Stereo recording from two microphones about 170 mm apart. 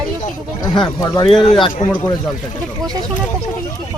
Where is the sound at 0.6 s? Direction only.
20° left (ahead or behind).